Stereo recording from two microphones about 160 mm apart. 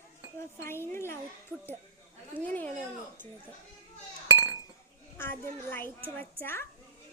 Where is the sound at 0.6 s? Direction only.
15° left (ahead or behind).